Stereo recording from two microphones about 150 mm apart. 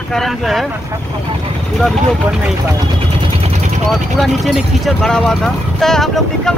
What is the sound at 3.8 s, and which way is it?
Speech, centre (ahead or behind).